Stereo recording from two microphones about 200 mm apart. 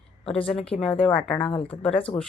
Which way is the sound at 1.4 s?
30° left (ahead or behind).